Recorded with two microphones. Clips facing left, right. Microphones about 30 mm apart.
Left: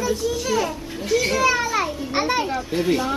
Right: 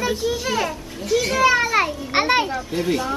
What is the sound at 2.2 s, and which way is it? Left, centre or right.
Speech, right.